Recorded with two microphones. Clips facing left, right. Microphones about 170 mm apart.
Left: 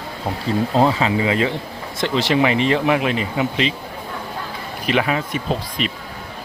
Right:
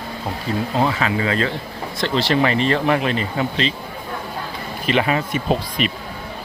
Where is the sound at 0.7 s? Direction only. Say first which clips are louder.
Left 3 dB; 30° left (ahead or behind).